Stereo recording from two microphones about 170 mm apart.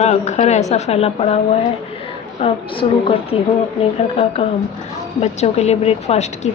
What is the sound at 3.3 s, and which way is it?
Speech, 30° left (ahead or behind).